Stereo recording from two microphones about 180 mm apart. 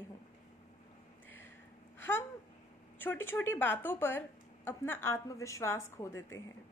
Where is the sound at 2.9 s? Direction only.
10° left (ahead or behind).